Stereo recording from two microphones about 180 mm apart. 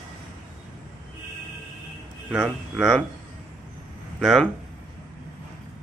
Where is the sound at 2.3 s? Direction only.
Centre (ahead or behind).